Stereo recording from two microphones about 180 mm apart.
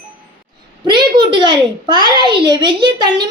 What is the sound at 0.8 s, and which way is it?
A woman's voice, 25° right (ahead or behind).